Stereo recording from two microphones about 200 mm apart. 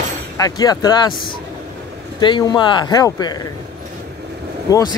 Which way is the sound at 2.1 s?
20° left (ahead or behind).